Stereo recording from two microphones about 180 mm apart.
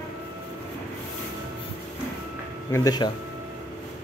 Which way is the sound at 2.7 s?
20° left (ahead or behind).